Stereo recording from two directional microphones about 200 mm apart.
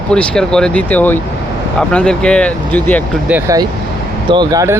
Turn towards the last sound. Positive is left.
turn(degrees=-15)  # may be behind; listen again after turning